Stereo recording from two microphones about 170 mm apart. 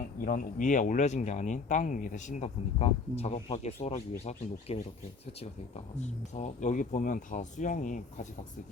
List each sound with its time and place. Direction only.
0.3 s speech: 50° left (ahead or behind)
6.0 s speech: 45° left (ahead or behind)